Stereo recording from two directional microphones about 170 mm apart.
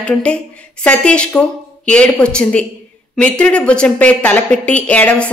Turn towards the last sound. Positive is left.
turn(degrees=10)  # may be behind; listen again after turning